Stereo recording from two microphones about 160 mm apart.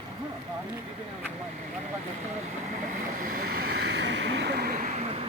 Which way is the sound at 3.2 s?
60° right (ahead or behind).